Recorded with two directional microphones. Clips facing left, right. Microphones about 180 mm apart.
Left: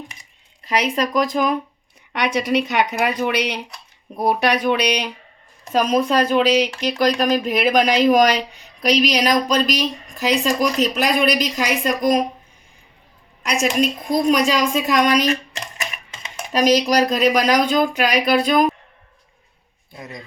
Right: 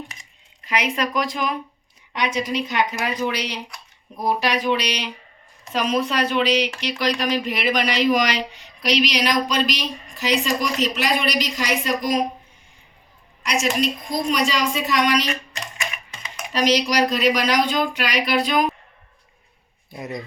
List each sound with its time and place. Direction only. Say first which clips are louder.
0.6 s speech: left 3 dB; 35° left (ahead or behind)
2.1 s a woman's voice: left 4 dB; 65° left (ahead or behind); by 12.1 s 45° left (ahead or behind)
14.3 s speech: left 4 dB; 45° left (ahead or behind)
16.5 s speech: left 4 dB; 45° left (ahead or behind)
20.0 s speech: right 5 dB; 20° right (ahead or behind)